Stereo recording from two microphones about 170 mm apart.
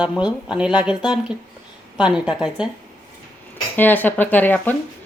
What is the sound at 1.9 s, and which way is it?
Speech, 5° right (ahead or behind).